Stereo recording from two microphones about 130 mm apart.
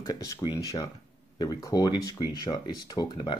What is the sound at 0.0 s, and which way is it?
Speech, 30° left (ahead or behind).